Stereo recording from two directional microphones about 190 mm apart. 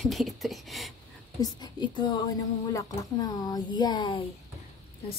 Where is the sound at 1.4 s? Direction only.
20° left (ahead or behind).